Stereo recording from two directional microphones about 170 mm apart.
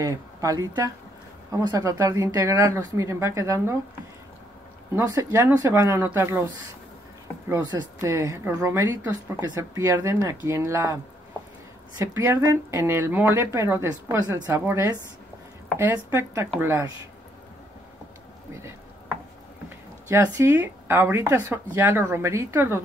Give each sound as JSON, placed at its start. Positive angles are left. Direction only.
{"t": 0.0, "sound": "speech", "side_deg": -20}
{"t": 4.9, "sound": "speech", "side_deg": -15}
{"t": 12.0, "sound": "speech", "side_deg": -15}
{"t": 18.5, "sound": "speech", "side_deg": -15}
{"t": 20.1, "sound": "speech", "side_deg": -15}